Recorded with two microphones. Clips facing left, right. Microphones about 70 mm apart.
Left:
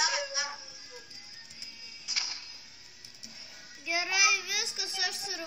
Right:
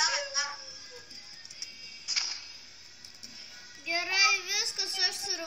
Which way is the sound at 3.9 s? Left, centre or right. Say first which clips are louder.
Even; centre.